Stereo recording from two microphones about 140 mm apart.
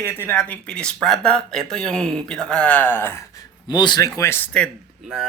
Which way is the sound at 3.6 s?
30° left (ahead or behind).